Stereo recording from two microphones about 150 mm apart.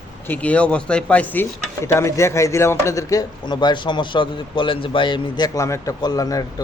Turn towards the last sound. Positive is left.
turn(degrees=25)  # may be behind; listen again after turning